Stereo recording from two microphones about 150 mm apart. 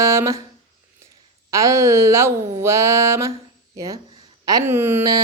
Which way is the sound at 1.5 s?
20° right (ahead or behind).